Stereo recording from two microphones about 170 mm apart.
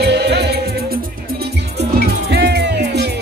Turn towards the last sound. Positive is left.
turn(degrees=-75)  # may be behind; listen again after turning